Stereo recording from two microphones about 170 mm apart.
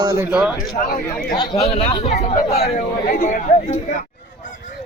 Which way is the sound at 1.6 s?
35° left (ahead or behind).